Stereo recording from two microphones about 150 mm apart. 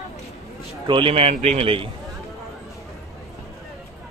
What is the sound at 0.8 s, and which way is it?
A man's voice, 35° right (ahead or behind).